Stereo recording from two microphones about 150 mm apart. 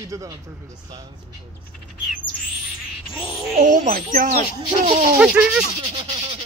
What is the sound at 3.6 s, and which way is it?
Speech, 65° right (ahead or behind).